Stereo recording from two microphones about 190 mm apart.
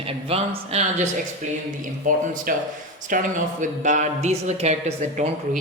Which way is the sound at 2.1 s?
45° right (ahead or behind).